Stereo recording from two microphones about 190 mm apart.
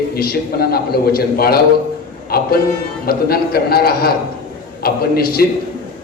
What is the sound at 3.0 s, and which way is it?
A man's voice, 55° left (ahead or behind).